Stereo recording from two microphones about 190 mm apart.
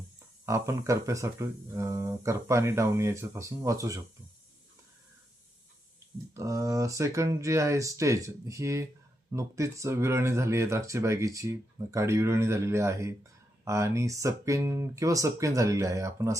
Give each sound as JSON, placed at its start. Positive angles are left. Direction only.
{"t": 0.4, "sound": "speech", "side_deg": -15}
{"t": 6.3, "sound": "speech", "side_deg": -15}